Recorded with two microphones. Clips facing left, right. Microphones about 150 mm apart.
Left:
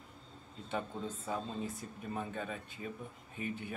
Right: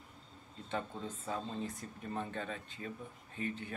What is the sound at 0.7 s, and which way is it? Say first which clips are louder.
Speech: left 1 dB; 10° left (ahead or behind).